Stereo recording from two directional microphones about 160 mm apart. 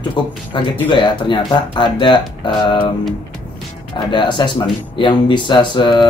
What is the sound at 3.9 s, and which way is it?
Speech, 30° left (ahead or behind).